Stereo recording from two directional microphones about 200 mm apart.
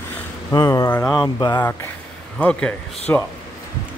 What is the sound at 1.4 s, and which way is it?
Speech, 20° left (ahead or behind).